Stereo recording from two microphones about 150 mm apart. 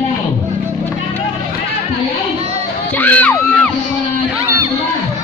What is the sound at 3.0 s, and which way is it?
Crowd, 10° left (ahead or behind).